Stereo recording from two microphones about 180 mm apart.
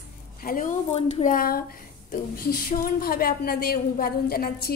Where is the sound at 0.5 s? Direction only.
50° left (ahead or behind).